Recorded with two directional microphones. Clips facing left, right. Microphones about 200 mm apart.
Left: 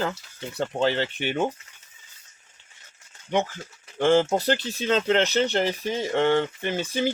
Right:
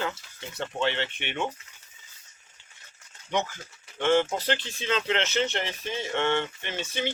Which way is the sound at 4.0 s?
35° left (ahead or behind).